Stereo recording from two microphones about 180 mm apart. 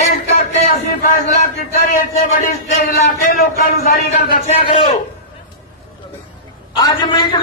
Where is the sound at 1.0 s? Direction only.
50° left (ahead or behind).